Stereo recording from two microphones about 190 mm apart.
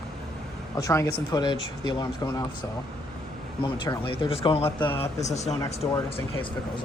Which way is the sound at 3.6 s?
25° left (ahead or behind).